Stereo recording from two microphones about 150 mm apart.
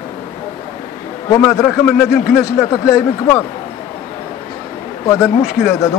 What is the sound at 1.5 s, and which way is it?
Speech, 15° left (ahead or behind).